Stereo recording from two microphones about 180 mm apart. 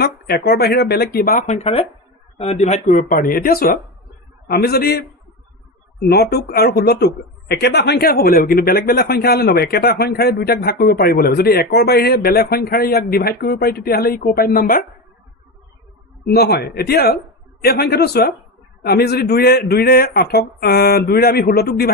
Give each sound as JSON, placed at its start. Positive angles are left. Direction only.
{"t": 0.0, "sound": "speech", "side_deg": 60}
{"t": 1.3, "sound": "speech", "side_deg": 40}
{"t": 16.3, "sound": "speech", "side_deg": 65}